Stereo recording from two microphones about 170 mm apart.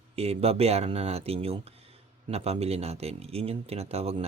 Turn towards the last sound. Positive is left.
turn(degrees=-35)  # may be behind; listen again after turning